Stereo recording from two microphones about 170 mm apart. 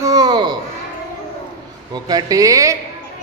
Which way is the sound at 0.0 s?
20° right (ahead or behind).